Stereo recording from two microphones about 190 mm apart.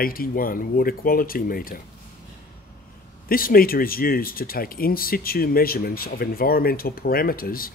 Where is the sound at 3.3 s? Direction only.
50° left (ahead or behind).